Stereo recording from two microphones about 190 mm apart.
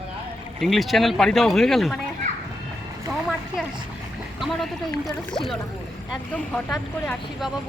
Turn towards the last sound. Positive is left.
turn(degrees=0)  # may be behind; listen again after turning